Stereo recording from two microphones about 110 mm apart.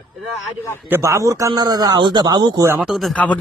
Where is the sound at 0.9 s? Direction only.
25° right (ahead or behind); by 2.7 s 40° right (ahead or behind).